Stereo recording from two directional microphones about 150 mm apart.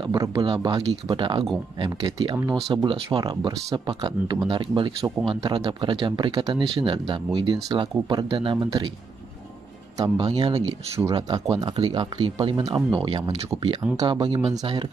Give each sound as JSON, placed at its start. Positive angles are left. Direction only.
{"t": 0.1, "sound": "speech", "side_deg": -25}
{"t": 9.9, "sound": "speech", "side_deg": -25}